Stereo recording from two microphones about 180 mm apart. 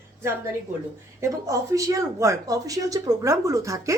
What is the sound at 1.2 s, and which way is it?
A woman's voice, 15° right (ahead or behind).